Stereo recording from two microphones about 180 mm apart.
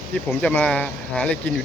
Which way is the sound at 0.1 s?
10° left (ahead or behind).